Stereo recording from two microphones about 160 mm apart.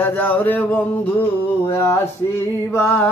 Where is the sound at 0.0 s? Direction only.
10° left (ahead or behind).